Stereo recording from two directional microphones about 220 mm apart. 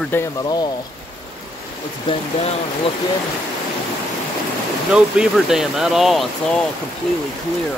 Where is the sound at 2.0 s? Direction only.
25° left (ahead or behind).